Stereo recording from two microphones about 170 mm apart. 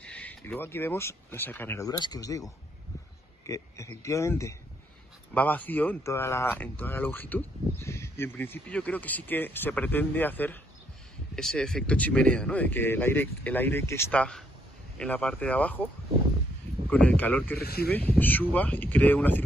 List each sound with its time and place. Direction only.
0.0 s speech: 10° left (ahead or behind)
16.9 s speech: 10° left (ahead or behind)
17.6 s speech: 65° left (ahead or behind)
17.8 s speech: 10° left (ahead or behind)